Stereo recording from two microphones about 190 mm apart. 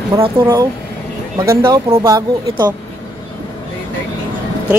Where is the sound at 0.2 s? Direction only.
20° right (ahead or behind).